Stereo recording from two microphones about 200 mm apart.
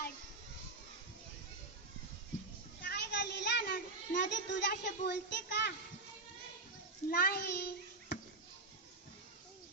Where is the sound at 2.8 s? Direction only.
50° left (ahead or behind).